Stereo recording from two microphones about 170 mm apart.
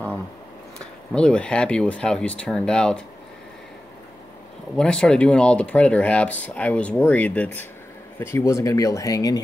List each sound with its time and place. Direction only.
0.7 s speech: 5° left (ahead or behind)
4.7 s speech: 5° left (ahead or behind); by 9.4 s 20° left (ahead or behind)